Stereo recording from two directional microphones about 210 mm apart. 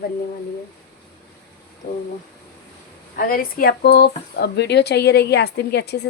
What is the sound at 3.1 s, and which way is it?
Speech, 45° left (ahead or behind).